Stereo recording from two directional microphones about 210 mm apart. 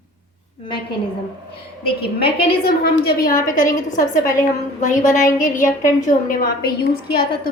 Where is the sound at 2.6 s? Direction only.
45° left (ahead or behind).